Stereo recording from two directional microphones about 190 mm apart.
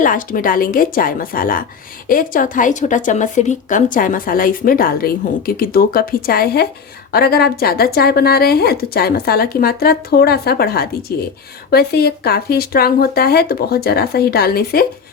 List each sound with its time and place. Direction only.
0.0 s speech: 45° left (ahead or behind)